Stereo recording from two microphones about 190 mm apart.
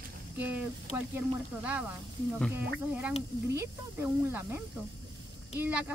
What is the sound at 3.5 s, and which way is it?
Speech, 15° right (ahead or behind).